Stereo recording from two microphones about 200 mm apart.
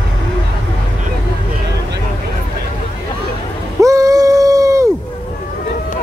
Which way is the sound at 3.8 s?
15° right (ahead or behind).